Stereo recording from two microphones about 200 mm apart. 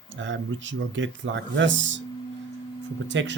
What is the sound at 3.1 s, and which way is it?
Speech, 65° right (ahead or behind).